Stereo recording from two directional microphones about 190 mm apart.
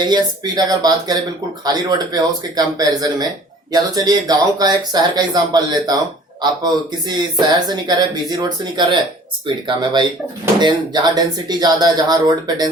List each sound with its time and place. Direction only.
0.0 s speech: 20° right (ahead or behind)
7.1 s speech: 25° right (ahead or behind)